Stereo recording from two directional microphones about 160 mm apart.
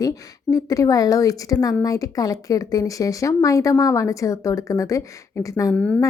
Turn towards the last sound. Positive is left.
turn(degrees=5)  # may be behind; listen again after turning